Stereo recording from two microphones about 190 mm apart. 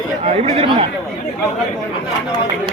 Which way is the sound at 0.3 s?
35° right (ahead or behind).